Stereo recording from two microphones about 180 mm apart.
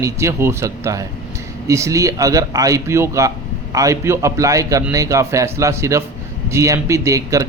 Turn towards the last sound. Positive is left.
turn(degrees=-15)  # may be behind; listen again after turning